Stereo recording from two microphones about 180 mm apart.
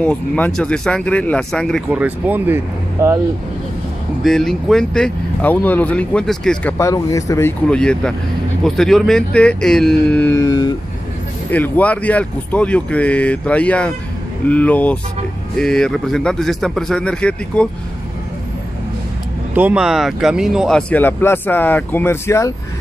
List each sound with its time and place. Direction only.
0.0 s speech: 10° left (ahead or behind)
1.9 s speech: 10° right (ahead or behind)
4.2 s speech: centre (ahead or behind)
6.8 s speech: 20° left (ahead or behind)
11.5 s speech: 10° left (ahead or behind)
19.5 s speech: 10° right (ahead or behind); by 22.5 s 15° left (ahead or behind)